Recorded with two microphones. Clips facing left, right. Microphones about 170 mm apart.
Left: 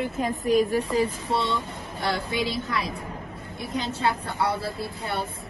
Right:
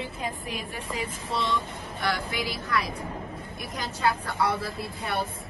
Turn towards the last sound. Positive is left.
turn(degrees=30)  # may be behind; listen again after turning